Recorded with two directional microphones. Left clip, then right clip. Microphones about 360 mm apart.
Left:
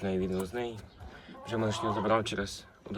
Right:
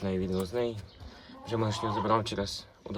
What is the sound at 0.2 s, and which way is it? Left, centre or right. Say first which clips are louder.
A man's voice: right 2 dB; centre.